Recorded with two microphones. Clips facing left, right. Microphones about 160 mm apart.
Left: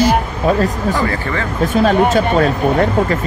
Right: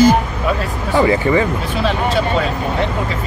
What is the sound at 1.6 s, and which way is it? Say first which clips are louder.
Speech: left 6 dB; 45° left (ahead or behind).